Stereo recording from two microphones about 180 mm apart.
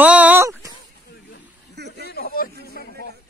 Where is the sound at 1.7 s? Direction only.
70° right (ahead or behind).